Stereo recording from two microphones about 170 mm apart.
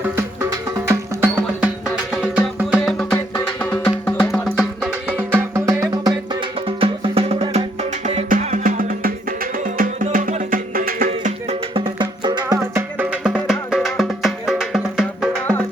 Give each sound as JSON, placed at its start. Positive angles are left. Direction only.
{"t": 0.9, "sound": "music", "side_deg": -10}
{"t": 5.1, "sound": "music", "side_deg": -15}
{"t": 6.7, "sound": "music", "side_deg": -30}
{"t": 11.7, "sound": "music", "side_deg": -30}